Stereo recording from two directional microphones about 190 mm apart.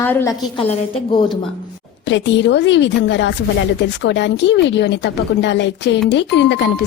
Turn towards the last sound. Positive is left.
turn(degrees=65)  # may be behind; listen again after turning